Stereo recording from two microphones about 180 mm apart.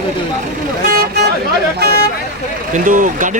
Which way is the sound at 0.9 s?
60° right (ahead or behind).